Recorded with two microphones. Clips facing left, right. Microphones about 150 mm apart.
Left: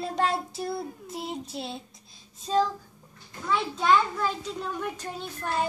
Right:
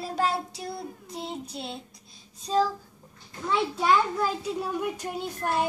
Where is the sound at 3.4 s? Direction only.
5° right (ahead or behind).